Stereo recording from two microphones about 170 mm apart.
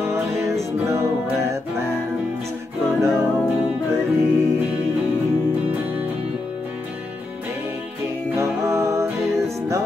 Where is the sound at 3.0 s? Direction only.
15° right (ahead or behind).